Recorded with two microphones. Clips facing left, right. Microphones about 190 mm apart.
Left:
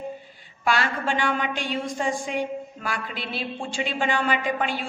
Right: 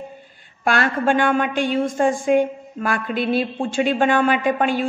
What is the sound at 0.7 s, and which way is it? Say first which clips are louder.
A woman's voice: right 6 dB; 50° right (ahead or behind).